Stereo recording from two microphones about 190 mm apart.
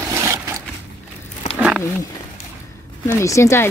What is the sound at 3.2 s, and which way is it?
Speech, 15° left (ahead or behind).